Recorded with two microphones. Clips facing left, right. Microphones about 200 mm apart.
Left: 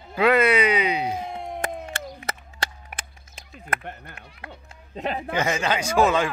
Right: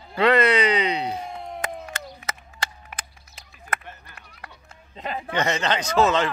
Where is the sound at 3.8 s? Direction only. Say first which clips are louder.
Left 6 dB; 60° left (ahead or behind).